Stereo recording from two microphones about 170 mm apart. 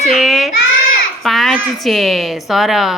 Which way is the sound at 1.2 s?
Centre (ahead or behind).